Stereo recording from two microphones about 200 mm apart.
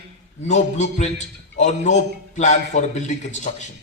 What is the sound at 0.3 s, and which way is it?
A man's voice, 35° left (ahead or behind).